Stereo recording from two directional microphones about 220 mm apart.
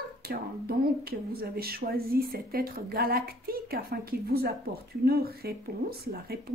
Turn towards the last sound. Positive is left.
turn(degrees=-45)  # may be behind; listen again after turning